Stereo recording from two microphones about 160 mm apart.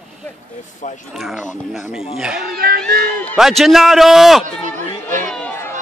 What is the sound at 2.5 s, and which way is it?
Speech, 70° right (ahead or behind).